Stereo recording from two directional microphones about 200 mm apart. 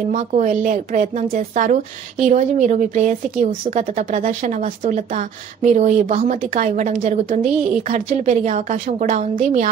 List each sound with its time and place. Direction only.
0.1 s speech: 40° right (ahead or behind)